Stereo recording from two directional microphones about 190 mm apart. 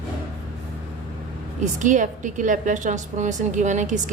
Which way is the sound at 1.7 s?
40° right (ahead or behind).